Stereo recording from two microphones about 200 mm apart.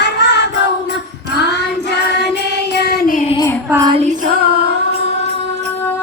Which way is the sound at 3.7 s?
15° right (ahead or behind).